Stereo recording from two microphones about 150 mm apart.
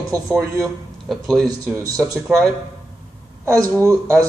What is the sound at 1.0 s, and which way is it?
A man's voice, 5° left (ahead or behind).